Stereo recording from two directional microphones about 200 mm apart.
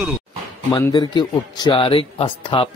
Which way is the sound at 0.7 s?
20° left (ahead or behind).